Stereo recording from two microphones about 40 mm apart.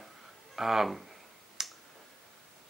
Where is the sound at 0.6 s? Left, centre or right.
Centre.